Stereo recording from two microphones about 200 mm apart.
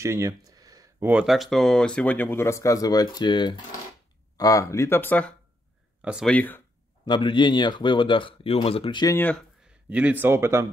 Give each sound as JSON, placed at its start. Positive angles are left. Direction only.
{"t": 0.0, "sound": "speech", "side_deg": -15}
{"t": 7.1, "sound": "speech", "side_deg": 25}
{"t": 9.1, "sound": "speech", "side_deg": 10}
{"t": 9.8, "sound": "speech", "side_deg": -5}